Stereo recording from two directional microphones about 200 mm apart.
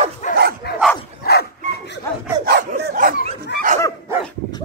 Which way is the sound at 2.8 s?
50° right (ahead or behind).